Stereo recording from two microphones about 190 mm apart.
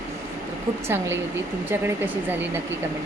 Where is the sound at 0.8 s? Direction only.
15° right (ahead or behind).